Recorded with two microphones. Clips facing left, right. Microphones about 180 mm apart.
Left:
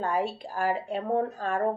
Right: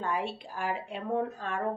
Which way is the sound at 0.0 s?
40° left (ahead or behind).